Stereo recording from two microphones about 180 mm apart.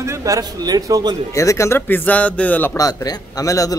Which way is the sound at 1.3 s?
15° left (ahead or behind).